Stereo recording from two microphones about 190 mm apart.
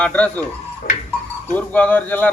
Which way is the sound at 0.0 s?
5° left (ahead or behind).